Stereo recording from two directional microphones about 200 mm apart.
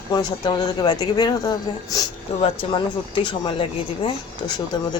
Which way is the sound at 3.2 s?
25° left (ahead or behind).